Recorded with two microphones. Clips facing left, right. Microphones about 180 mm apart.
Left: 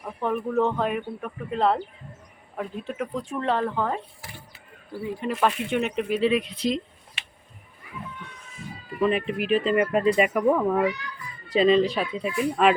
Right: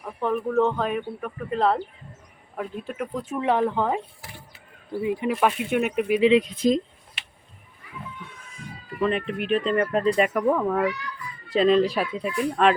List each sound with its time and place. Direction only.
0.0 s speech: centre (ahead or behind); by 4.0 s 15° right (ahead or behind)
5.0 s speech: 10° right (ahead or behind)
6.4 s speech: 45° right (ahead or behind)
8.5 s speech: 5° left (ahead or behind)